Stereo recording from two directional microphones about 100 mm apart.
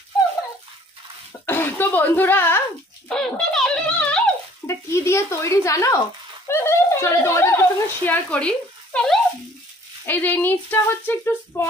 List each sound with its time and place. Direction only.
1.4 s throat clearing: 25° left (ahead or behind)
3.1 s a sound: 5° left (ahead or behind)
4.6 s speech: 30° left (ahead or behind); by 9.2 s 5° left (ahead or behind)
10.0 s speech: 20° left (ahead or behind)